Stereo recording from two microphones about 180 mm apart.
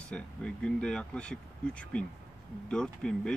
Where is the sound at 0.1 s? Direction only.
5° left (ahead or behind).